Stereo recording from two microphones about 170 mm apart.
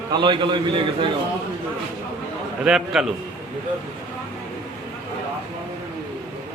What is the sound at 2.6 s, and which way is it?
Speech, 5° right (ahead or behind).